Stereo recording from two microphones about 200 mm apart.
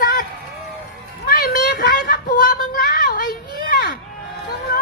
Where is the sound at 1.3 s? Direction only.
50° left (ahead or behind).